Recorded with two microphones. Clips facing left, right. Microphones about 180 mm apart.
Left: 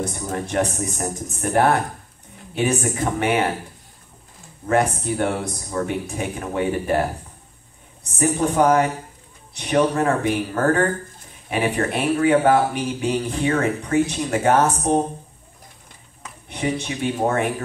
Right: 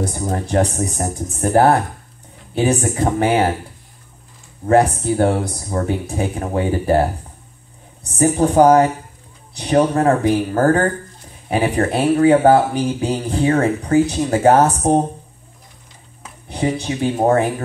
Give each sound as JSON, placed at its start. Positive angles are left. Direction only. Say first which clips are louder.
{"t": 0.0, "sound": "speech", "louder": "right 4 dB", "side_deg": -35}
{"t": 4.6, "sound": "speech", "louder": "right 6 dB", "side_deg": -35}
{"t": 16.4, "sound": "speech", "louder": "right 4 dB", "side_deg": -35}